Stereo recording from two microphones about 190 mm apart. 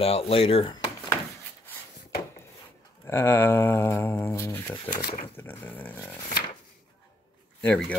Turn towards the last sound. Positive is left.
turn(degrees=5)  # may be behind; listen again after turning